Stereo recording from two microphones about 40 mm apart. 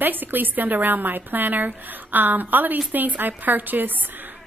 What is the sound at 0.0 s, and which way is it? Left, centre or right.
Speech, right.